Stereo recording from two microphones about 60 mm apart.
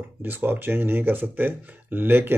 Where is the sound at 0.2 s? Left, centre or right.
Right.